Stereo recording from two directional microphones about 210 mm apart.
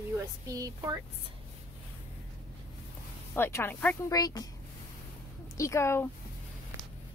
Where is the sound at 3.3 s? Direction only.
10° left (ahead or behind).